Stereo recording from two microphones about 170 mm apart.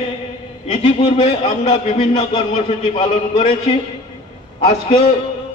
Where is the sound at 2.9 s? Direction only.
40° left (ahead or behind).